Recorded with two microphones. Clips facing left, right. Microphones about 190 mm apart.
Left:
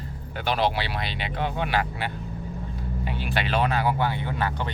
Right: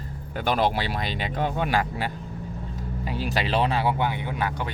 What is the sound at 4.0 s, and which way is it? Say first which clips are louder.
Speech: even; 15° right (ahead or behind).